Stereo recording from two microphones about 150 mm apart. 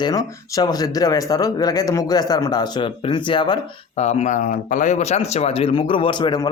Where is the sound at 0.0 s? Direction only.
25° left (ahead or behind).